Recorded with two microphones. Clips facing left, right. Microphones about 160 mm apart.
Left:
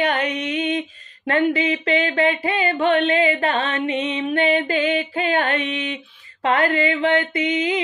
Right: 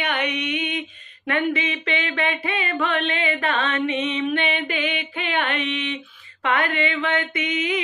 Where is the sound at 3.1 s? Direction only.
30° left (ahead or behind).